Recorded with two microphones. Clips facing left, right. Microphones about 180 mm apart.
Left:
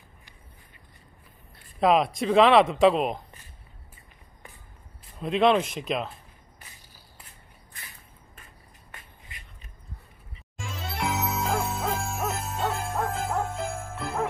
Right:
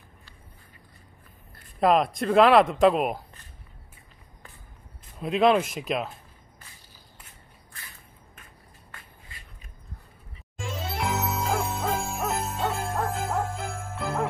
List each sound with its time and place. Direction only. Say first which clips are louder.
1.5 s speech: even; centre (ahead or behind)
5.2 s speech: right 1 dB; 5° right (ahead or behind)
10.6 s hoot: right 1 dB; centre (ahead or behind)